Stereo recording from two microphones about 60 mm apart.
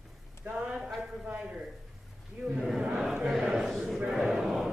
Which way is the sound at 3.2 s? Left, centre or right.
Centre.